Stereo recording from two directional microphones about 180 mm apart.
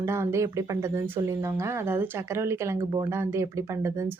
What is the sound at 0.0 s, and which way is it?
Speech, 15° right (ahead or behind).